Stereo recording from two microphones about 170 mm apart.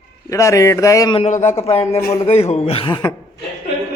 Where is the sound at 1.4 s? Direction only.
15° left (ahead or behind).